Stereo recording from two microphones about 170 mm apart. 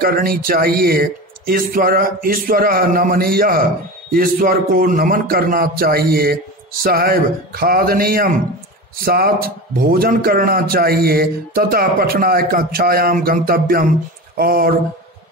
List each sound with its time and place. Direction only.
0.0 s a man's voice: 60° right (ahead or behind)